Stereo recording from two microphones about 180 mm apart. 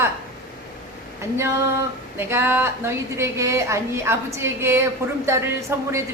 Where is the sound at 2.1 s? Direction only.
15° right (ahead or behind).